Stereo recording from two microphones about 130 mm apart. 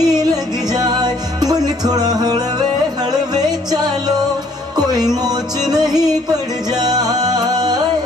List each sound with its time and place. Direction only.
0.0 s music: 30° right (ahead or behind)
5.2 s music: 30° right (ahead or behind)